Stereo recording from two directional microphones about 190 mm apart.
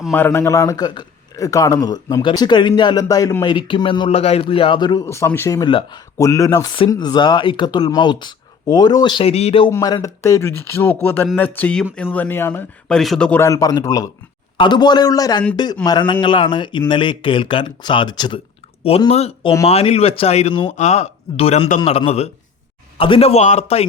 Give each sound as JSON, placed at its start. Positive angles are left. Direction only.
{"t": 0.1, "sound": "a man's voice", "side_deg": 10}
{"t": 9.6, "sound": "a man's voice", "side_deg": 15}